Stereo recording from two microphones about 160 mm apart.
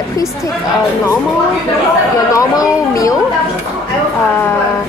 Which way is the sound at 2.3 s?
20° left (ahead or behind).